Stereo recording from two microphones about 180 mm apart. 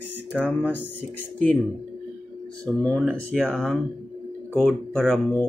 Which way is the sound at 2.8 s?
5° left (ahead or behind).